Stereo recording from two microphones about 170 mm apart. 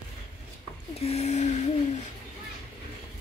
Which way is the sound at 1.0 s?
40° left (ahead or behind).